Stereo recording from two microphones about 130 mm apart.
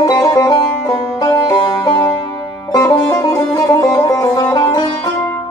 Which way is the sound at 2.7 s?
25° left (ahead or behind).